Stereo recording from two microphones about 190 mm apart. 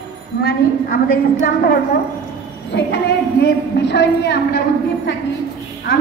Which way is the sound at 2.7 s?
65° left (ahead or behind).